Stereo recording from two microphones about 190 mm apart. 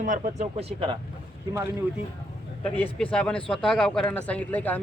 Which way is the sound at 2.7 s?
5° left (ahead or behind).